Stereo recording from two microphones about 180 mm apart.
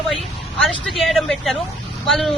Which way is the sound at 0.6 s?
Centre (ahead or behind).